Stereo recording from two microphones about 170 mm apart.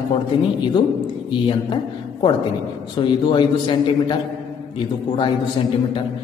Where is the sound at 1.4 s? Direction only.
30° left (ahead or behind).